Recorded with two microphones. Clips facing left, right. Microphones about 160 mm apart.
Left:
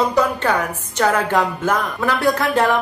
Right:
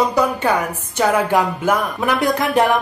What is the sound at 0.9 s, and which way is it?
A woman's voice, 10° right (ahead or behind).